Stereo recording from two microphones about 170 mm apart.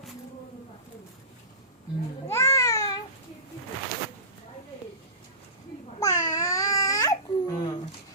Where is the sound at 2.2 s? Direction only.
20° left (ahead or behind).